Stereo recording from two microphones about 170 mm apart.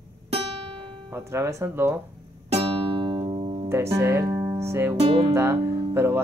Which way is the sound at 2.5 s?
35° right (ahead or behind).